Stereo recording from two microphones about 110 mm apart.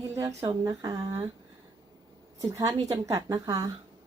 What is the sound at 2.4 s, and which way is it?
Speech, 30° right (ahead or behind).